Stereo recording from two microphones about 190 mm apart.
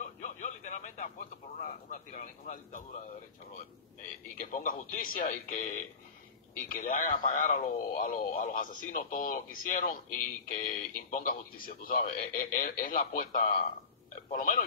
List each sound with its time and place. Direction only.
0.2 s radio: 40° left (ahead or behind)
1.6 s a man's voice: 45° left (ahead or behind)
4.4 s speech: 45° left (ahead or behind)